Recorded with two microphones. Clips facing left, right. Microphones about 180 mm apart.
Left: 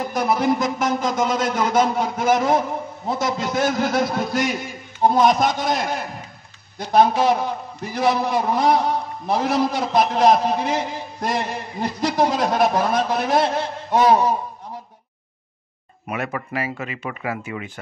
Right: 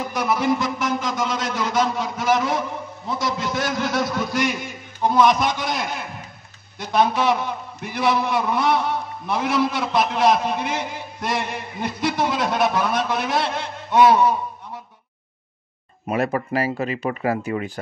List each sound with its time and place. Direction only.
0.1 s a man's voice: 50° left (ahead or behind)
16.1 s speech: 35° right (ahead or behind)